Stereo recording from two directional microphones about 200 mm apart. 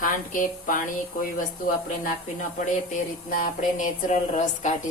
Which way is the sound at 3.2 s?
40° left (ahead or behind).